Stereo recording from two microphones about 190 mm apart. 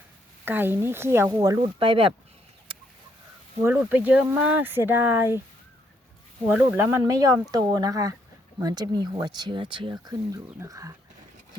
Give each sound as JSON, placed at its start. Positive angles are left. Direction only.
{"t": 0.4, "sound": "speech", "side_deg": -10}
{"t": 2.7, "sound": "chicken", "side_deg": -30}
{"t": 3.6, "sound": "speech", "side_deg": -10}
{"t": 6.5, "sound": "speech", "side_deg": -10}